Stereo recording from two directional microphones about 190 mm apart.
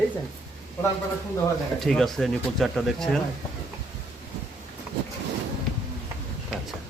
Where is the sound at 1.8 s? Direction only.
Centre (ahead or behind).